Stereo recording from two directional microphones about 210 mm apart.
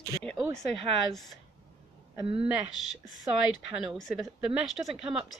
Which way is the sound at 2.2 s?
30° right (ahead or behind).